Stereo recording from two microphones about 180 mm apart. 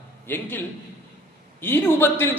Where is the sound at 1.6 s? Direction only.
10° left (ahead or behind).